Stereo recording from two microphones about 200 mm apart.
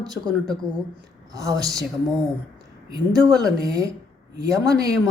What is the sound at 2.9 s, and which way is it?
Speech, 15° right (ahead or behind).